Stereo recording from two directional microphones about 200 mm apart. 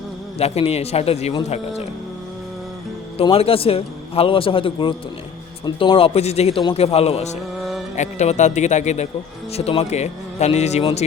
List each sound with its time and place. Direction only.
0.3 s a man's voice: 30° left (ahead or behind)
3.2 s a man's voice: 30° left (ahead or behind)